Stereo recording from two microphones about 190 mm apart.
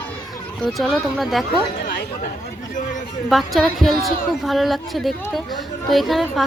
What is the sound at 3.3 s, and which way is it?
A woman's voice, centre (ahead or behind).